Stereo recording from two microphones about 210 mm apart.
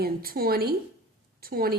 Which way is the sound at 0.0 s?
45° right (ahead or behind).